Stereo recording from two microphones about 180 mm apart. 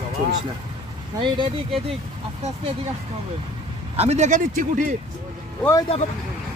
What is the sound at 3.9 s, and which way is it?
Speech, 40° right (ahead or behind).